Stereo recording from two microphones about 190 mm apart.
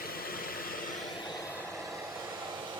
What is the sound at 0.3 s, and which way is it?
Vehicle, 50° left (ahead or behind).